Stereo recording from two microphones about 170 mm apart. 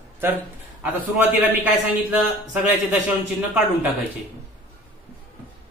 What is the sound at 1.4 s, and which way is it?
Speech, 10° right (ahead or behind).